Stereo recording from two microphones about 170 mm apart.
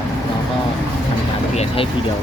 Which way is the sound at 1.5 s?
40° left (ahead or behind).